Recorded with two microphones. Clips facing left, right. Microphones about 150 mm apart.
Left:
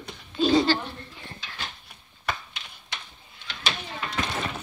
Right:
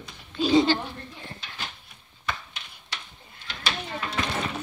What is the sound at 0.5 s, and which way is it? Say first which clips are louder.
Speech: right 2 dB; 20° right (ahead or behind).